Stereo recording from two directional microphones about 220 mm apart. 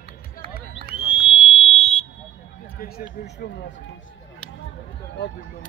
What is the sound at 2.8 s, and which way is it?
Speech, 50° left (ahead or behind).